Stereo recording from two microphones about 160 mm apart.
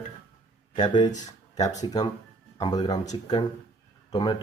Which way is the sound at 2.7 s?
25° left (ahead or behind).